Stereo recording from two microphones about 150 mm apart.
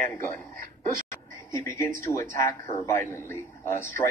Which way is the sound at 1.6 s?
20° left (ahead or behind).